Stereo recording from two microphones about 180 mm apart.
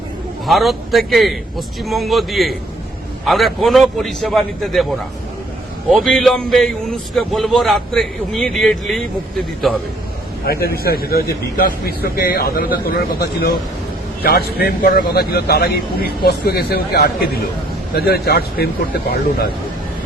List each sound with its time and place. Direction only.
0.4 s a man's voice: centre (ahead or behind)
10.4 s a man's voice: 55° left (ahead or behind)